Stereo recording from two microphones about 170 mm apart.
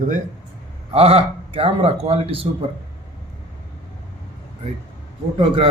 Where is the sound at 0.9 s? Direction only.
35° right (ahead or behind).